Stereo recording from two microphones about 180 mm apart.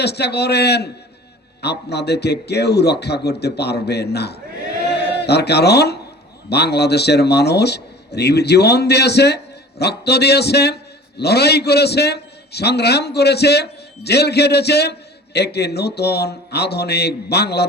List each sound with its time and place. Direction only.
0.0 s a man's voice: 65° left (ahead or behind)